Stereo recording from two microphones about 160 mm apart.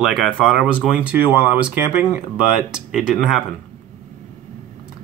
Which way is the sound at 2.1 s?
5° right (ahead or behind).